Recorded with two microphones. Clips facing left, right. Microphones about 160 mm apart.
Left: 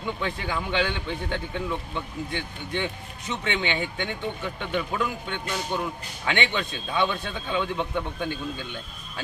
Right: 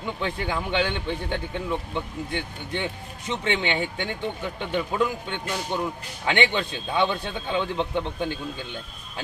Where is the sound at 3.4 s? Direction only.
25° right (ahead or behind).